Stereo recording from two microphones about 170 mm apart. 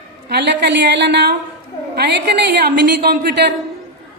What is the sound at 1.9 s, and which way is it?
A woman's voice, 80° right.